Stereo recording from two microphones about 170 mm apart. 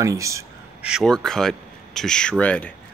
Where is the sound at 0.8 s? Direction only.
Centre (ahead or behind).